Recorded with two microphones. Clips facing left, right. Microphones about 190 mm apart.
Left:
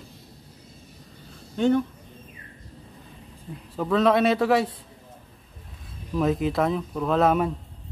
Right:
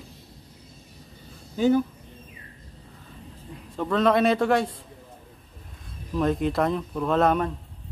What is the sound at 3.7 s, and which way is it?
Speech, centre (ahead or behind).